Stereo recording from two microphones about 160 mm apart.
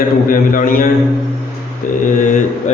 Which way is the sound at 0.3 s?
60° left (ahead or behind).